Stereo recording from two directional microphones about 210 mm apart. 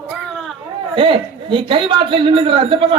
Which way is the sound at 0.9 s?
25° right (ahead or behind).